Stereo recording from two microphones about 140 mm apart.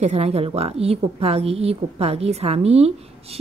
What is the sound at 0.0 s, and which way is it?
Speech, 50° right (ahead or behind).